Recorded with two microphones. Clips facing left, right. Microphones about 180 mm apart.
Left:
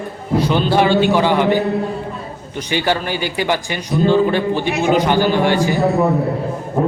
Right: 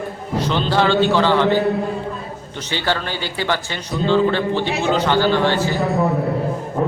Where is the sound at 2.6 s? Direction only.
15° left (ahead or behind).